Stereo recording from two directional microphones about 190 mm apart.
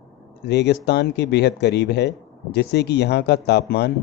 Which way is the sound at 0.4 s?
65° left (ahead or behind).